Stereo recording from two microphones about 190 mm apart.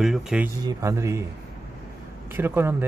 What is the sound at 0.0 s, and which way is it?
Speech, 5° right (ahead or behind).